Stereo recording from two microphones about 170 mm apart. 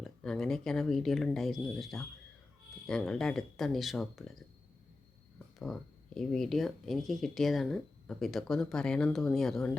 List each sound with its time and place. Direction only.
0.0 s speech: 5° left (ahead or behind)
5.5 s speech: centre (ahead or behind)